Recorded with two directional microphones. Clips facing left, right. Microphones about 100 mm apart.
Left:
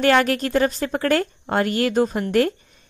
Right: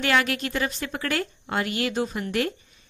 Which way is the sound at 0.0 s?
45° left (ahead or behind).